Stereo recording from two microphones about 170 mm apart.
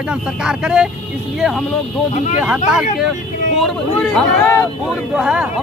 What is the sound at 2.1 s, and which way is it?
Speech, 45° left (ahead or behind).